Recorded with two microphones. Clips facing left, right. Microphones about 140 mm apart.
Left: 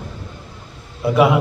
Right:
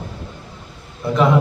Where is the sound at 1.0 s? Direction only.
10° left (ahead or behind).